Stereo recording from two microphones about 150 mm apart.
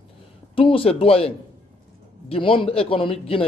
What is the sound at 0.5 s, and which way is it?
Speech, 35° left (ahead or behind).